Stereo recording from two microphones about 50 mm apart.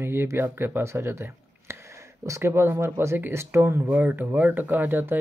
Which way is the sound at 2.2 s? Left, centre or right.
Right.